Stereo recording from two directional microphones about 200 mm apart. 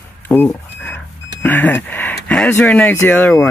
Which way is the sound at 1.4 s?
10° left (ahead or behind).